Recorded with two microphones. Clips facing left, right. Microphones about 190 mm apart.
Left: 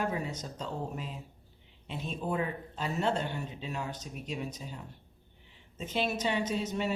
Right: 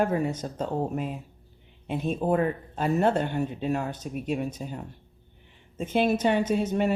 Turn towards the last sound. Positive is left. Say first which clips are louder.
# right 7 dB
turn(degrees=-55)  # may be behind; listen again after turning